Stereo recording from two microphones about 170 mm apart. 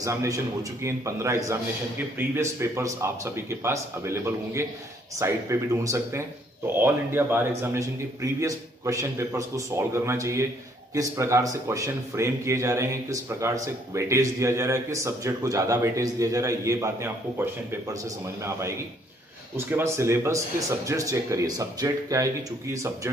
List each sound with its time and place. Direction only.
0.0 s speech: 20° right (ahead or behind)